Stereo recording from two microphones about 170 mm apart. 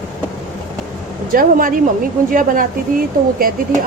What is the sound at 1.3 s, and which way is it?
A woman's voice, 55° right (ahead or behind).